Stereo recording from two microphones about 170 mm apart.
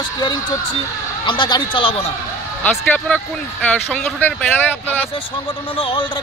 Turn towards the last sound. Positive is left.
turn(degrees=30)  # may be behind; listen again after turning